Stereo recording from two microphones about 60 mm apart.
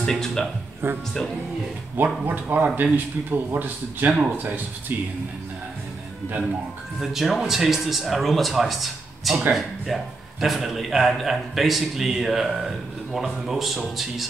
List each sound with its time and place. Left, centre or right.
0.0 s speech: centre
0.8 s speech: right
2.2 s speech: right
7.0 s speech: centre